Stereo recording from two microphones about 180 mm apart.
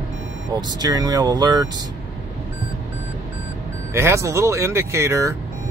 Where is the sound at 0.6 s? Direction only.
20° right (ahead or behind).